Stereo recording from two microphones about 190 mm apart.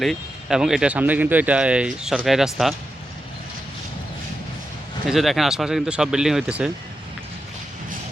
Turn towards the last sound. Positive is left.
turn(degrees=-5)  # may be behind; listen again after turning